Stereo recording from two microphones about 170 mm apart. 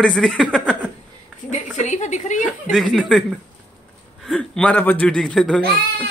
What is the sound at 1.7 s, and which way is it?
Speech, 45° left (ahead or behind).